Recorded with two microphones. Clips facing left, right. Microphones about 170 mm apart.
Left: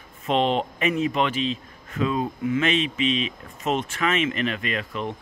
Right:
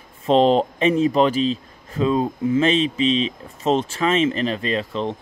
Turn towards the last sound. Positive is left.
turn(degrees=-30)  # may be behind; listen again after turning